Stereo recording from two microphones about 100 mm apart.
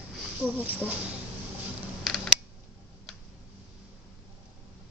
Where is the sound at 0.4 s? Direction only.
15° right (ahead or behind).